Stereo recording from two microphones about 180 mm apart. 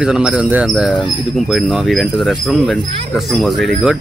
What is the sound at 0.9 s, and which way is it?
Speech, 25° left (ahead or behind).